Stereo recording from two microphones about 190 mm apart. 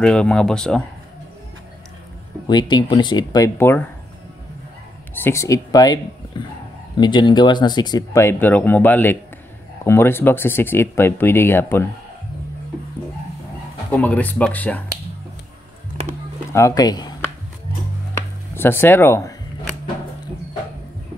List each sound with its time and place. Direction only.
0.0 s speech: 5° left (ahead or behind)
2.4 s speech: 25° left (ahead or behind)
5.2 s speech: 15° left (ahead or behind)
13.9 s speech: 10° left (ahead or behind)
16.5 s speech: 20° left (ahead or behind)
18.5 s speech: 10° left (ahead or behind)